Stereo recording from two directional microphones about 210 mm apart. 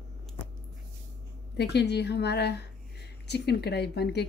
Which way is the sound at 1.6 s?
55° left (ahead or behind).